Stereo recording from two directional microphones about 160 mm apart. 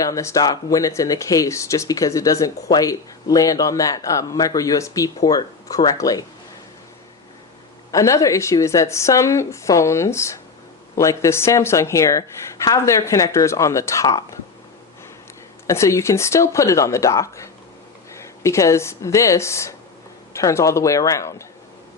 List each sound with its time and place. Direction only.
0.0 s speech: 20° left (ahead or behind)
7.9 s speech: 20° left (ahead or behind)
15.6 s speech: 20° left (ahead or behind)